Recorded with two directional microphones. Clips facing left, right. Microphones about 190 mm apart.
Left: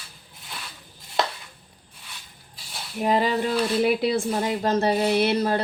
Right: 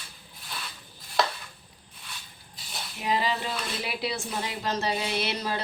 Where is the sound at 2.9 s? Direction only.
50° left (ahead or behind).